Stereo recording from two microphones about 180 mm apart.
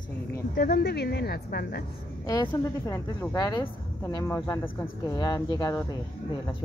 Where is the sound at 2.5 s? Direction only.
10° left (ahead or behind).